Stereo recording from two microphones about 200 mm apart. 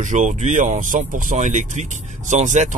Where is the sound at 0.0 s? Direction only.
40° right (ahead or behind).